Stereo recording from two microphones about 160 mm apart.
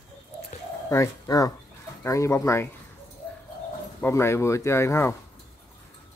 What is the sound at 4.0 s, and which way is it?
Speech, 15° left (ahead or behind).